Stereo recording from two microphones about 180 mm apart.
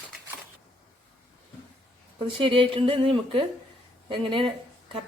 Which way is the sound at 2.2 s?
30° right (ahead or behind).